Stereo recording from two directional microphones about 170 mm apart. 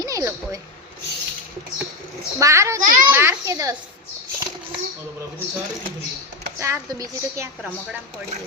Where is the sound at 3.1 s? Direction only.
15° right (ahead or behind).